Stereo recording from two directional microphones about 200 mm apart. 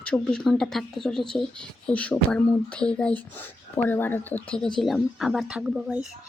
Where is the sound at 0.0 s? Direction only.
5° left (ahead or behind).